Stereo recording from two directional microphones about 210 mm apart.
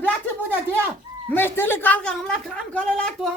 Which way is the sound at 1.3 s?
10° left (ahead or behind).